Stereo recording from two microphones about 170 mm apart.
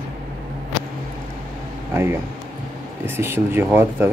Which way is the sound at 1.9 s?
15° right (ahead or behind).